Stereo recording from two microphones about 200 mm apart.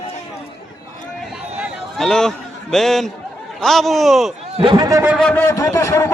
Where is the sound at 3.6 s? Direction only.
Centre (ahead or behind).